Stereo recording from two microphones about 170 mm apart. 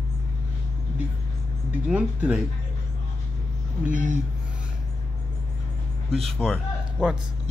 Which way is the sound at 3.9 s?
50° right (ahead or behind).